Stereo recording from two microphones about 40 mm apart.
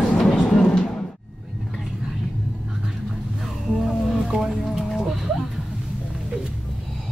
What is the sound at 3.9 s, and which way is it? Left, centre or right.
Music, centre.